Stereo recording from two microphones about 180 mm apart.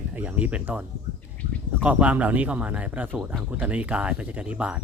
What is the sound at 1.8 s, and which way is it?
Speech, 10° right (ahead or behind).